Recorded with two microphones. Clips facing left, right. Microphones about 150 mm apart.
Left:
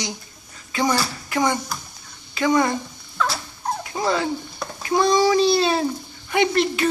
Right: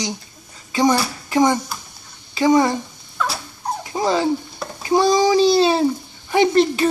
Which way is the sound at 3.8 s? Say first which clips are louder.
Right 4 dB; 25° right (ahead or behind).